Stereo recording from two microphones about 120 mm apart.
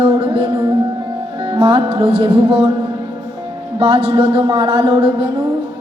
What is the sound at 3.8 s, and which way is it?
Music, 50° right (ahead or behind).